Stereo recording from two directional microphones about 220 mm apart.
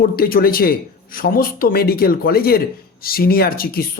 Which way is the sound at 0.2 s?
40° left (ahead or behind).